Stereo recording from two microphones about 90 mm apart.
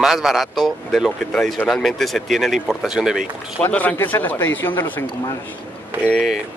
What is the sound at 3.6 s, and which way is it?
Speech, 15° left (ahead or behind).